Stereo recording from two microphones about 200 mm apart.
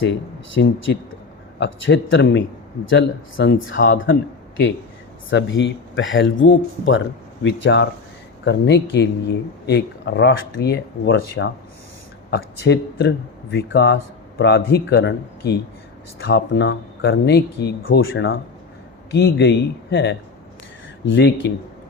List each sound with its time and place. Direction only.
0.0 s speech: 70° left (ahead or behind)
16.2 s speech: 65° left (ahead or behind)